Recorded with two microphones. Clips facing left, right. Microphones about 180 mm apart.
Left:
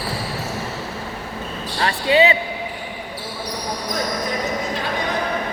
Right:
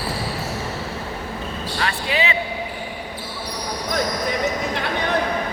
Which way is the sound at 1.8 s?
35° left (ahead or behind).